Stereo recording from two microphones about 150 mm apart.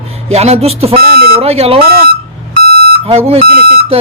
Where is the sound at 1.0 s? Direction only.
85° right.